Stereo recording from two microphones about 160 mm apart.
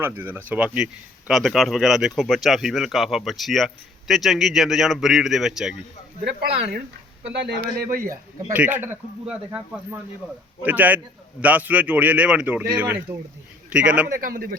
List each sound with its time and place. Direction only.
0.0 s a man's voice: 15° right (ahead or behind)
6.2 s speech: 90° right
7.8 s a man's voice: 65° right (ahead or behind)
8.5 s a man's voice: 10° right (ahead or behind)
14.1 s a man's voice: 65° right (ahead or behind)